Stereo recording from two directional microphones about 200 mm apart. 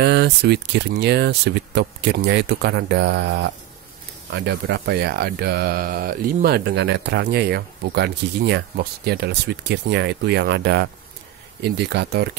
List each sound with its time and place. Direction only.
0.0 s speech: 55° right (ahead or behind)